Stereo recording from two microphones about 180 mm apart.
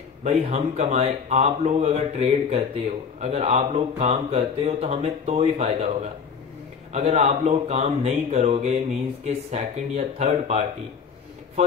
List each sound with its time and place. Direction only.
0.2 s speech: 40° right (ahead or behind)
6.9 s speech: 40° right (ahead or behind)